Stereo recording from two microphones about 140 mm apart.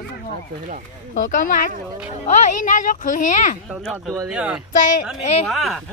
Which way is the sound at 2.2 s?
60° left (ahead or behind).